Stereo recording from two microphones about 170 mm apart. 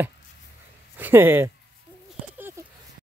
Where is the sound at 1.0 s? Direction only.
10° right (ahead or behind).